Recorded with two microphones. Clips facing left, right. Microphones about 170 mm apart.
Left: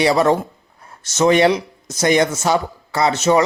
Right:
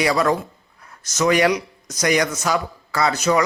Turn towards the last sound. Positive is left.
turn(degrees=25)  # may be behind; listen again after turning